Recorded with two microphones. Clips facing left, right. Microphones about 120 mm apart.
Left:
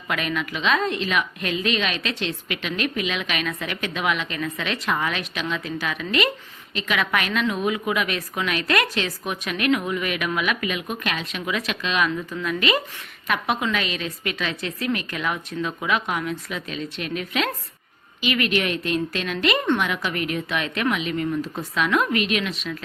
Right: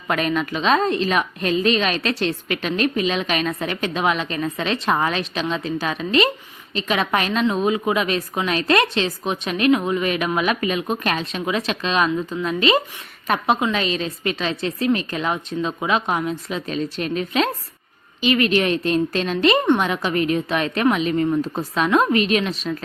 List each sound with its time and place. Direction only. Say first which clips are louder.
0.1 s a woman's voice: right 5 dB; 35° right (ahead or behind)